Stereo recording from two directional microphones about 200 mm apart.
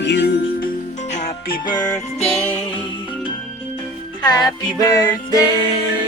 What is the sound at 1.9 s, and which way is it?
Music, 5° left (ahead or behind).